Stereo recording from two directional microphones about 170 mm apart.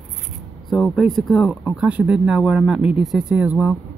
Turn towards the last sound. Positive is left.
turn(degrees=-10)  # may be behind; listen again after turning